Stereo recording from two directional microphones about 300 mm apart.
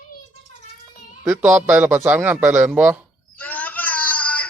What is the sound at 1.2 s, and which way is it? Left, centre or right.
A man's voice, centre.